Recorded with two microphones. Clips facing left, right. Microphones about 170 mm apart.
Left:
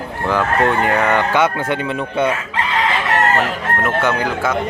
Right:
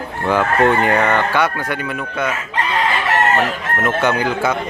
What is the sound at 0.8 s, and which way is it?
Speech, centre (ahead or behind).